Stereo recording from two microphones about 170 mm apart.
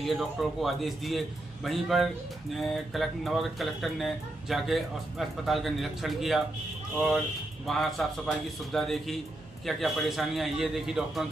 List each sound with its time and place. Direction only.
0.0 s speech: centre (ahead or behind)
7.6 s speech: centre (ahead or behind)